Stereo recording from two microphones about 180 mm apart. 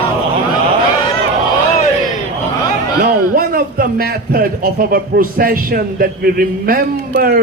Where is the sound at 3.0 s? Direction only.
50° right (ahead or behind).